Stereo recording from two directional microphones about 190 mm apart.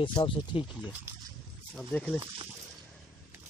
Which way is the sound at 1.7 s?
5° left (ahead or behind).